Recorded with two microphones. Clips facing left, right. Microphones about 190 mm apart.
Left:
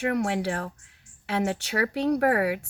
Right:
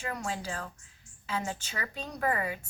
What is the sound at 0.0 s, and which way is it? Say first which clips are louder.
Speech: left 10 dB; 70° left (ahead or behind).